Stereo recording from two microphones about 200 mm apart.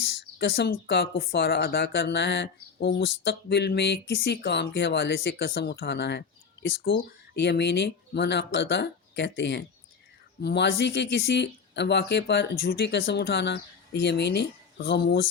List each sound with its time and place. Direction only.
0.3 s speech: 55° left (ahead or behind)